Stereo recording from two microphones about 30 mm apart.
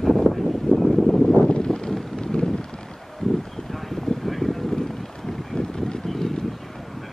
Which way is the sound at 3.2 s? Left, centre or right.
Centre.